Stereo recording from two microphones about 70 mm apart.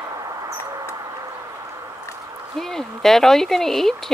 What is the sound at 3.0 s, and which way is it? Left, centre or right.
Speech, centre.